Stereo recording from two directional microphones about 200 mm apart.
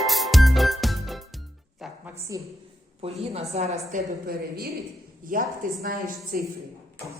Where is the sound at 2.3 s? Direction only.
20° right (ahead or behind).